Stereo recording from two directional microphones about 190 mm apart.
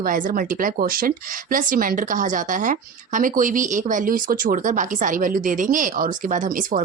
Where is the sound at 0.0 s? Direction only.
45° right (ahead or behind).